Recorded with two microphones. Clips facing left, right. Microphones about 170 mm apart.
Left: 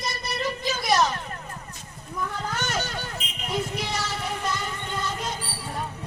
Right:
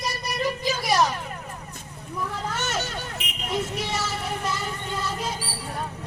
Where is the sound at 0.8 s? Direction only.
10° right (ahead or behind).